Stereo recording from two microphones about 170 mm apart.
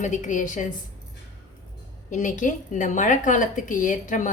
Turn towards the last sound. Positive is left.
turn(degrees=50)  # may be behind; listen again after turning